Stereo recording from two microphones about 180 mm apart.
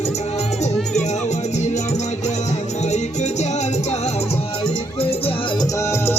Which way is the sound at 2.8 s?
40° left (ahead or behind).